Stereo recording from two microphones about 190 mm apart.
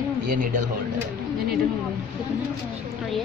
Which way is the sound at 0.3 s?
45° right (ahead or behind).